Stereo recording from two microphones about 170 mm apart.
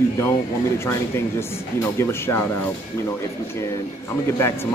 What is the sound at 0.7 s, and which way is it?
Speech, 15° left (ahead or behind).